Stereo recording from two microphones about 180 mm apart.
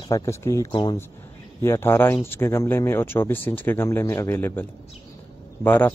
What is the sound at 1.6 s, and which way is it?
Speech, 15° left (ahead or behind).